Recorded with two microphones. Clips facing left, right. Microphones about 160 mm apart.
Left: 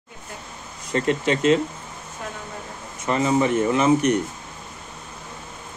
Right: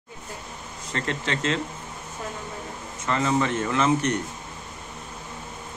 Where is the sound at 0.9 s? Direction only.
15° left (ahead or behind).